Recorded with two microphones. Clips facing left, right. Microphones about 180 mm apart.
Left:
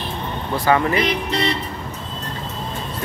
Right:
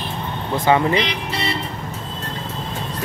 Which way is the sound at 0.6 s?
20° right (ahead or behind).